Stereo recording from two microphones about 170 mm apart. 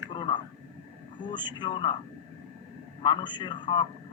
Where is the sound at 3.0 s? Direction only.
25° left (ahead or behind).